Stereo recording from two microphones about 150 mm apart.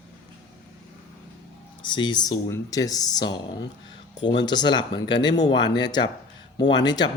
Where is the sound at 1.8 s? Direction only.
30° left (ahead or behind).